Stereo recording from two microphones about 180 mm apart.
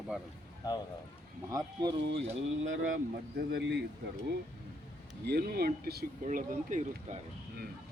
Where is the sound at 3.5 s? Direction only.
65° right (ahead or behind).